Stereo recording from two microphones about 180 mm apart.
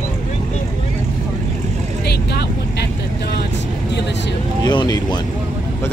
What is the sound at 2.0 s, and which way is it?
Speech, 60° left (ahead or behind).